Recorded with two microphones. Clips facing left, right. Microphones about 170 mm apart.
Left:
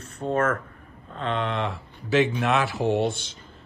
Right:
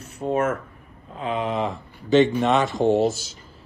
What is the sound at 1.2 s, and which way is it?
Speech, 5° right (ahead or behind).